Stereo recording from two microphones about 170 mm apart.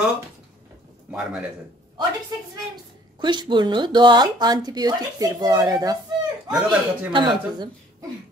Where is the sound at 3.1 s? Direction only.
25° right (ahead or behind).